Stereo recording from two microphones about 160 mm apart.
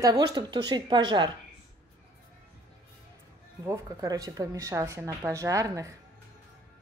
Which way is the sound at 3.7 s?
20° right (ahead or behind).